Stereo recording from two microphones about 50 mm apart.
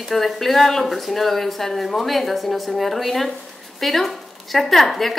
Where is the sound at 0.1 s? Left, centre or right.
Centre.